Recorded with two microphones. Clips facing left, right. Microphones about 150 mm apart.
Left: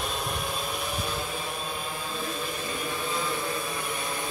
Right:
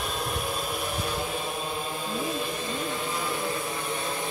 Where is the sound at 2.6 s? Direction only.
20° right (ahead or behind).